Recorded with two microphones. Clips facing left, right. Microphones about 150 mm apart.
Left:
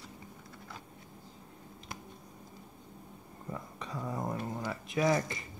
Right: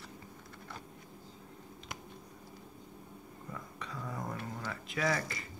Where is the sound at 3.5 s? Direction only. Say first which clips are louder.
Left 4 dB; 25° left (ahead or behind).